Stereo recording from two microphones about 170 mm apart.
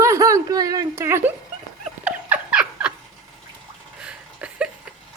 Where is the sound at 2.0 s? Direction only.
5° right (ahead or behind).